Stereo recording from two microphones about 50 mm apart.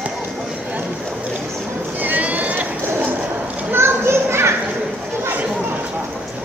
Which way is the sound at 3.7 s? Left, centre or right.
Right.